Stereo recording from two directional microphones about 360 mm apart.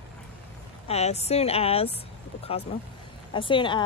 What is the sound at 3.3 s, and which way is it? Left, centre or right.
Speech, centre.